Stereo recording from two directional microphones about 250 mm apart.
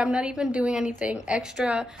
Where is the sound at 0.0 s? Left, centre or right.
Centre.